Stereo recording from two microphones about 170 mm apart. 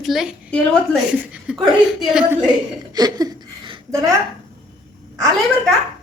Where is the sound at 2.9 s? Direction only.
25° right (ahead or behind).